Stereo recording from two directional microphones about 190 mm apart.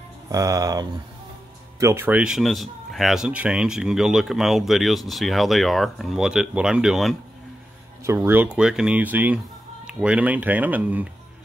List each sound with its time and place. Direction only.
0.3 s speech: 15° right (ahead or behind); by 7.2 s centre (ahead or behind)
8.0 s speech: 15° right (ahead or behind)